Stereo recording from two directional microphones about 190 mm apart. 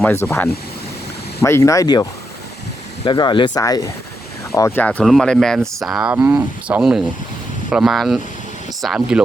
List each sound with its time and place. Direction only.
0.0 s speech: 15° left (ahead or behind); by 9.2 s 5° right (ahead or behind)